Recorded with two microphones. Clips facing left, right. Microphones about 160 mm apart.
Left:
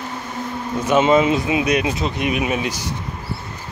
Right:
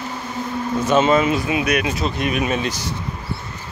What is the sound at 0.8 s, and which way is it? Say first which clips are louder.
Speech: left 2 dB; 15° left (ahead or behind).